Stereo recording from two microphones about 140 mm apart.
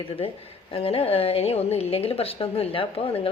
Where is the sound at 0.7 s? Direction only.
40° left (ahead or behind).